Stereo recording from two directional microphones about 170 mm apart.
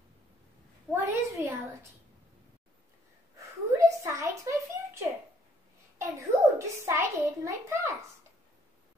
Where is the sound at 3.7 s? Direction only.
15° right (ahead or behind).